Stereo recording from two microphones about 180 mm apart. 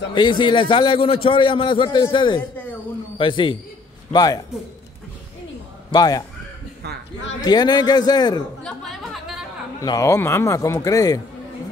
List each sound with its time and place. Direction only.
0.1 s a man's voice: 25° left (ahead or behind)
5.9 s a man's voice: 20° left (ahead or behind)
7.4 s a man's voice: 20° left (ahead or behind)
8.6 s a sound: centre (ahead or behind)
9.8 s a man's voice: 15° left (ahead or behind)